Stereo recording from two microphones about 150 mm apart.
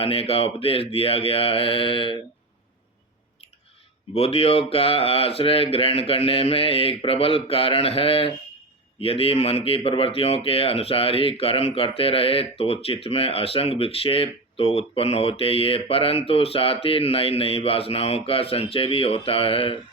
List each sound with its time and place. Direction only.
0.0 s speech: 40° left (ahead or behind)
4.1 s speech: 40° left (ahead or behind)